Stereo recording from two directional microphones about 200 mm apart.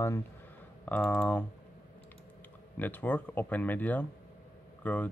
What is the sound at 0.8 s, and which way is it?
Speech, 10° left (ahead or behind).